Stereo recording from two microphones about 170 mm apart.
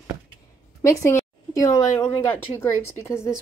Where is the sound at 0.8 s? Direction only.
15° left (ahead or behind).